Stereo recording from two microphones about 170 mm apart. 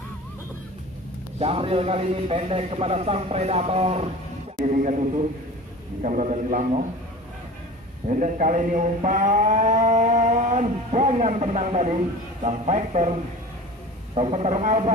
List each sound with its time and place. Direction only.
1.4 s a man's voice: 35° right (ahead or behind)
4.7 s speech: 50° right (ahead or behind)
8.2 s a man's voice: 45° right (ahead or behind)